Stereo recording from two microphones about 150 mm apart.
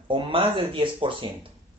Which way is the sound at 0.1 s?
35° right (ahead or behind).